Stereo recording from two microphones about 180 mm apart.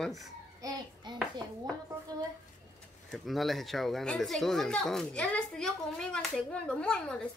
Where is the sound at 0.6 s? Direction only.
20° right (ahead or behind).